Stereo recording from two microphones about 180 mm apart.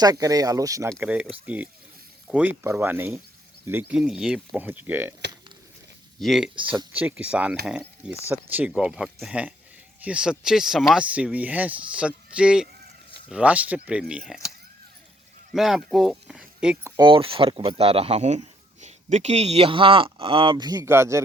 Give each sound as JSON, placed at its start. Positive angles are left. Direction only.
{"t": 0.0, "sound": "speech", "side_deg": -20}
{"t": 6.1, "sound": "speech", "side_deg": 0}
{"t": 15.5, "sound": "speech", "side_deg": 0}
{"t": 17.0, "sound": "speech", "side_deg": -30}